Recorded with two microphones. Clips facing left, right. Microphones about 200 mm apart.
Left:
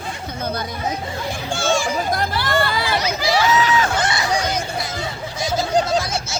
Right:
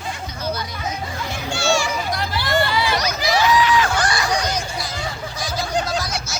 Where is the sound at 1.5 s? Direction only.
50° left (ahead or behind).